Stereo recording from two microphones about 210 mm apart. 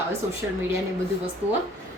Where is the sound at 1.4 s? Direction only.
10° right (ahead or behind).